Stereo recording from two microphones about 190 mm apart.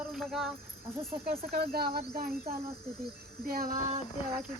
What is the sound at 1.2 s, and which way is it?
Speech, 50° right (ahead or behind).